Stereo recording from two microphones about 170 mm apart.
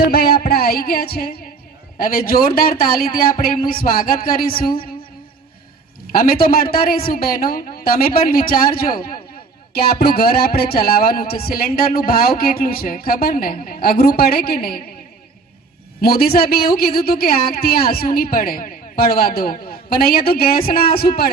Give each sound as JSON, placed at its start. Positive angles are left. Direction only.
{"t": 0.0, "sound": "a woman's voice", "side_deg": 65}
{"t": 6.1, "sound": "a woman's voice", "side_deg": 55}
{"t": 16.0, "sound": "a woman's voice", "side_deg": 65}